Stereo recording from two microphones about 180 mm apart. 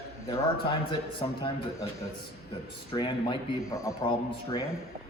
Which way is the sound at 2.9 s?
25° left (ahead or behind).